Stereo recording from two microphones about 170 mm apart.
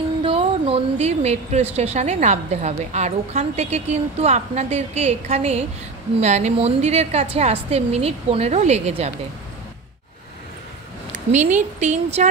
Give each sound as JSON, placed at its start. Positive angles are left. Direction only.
{"t": 0.2, "sound": "a woman's voice", "side_deg": -35}
{"t": 11.3, "sound": "speech", "side_deg": -45}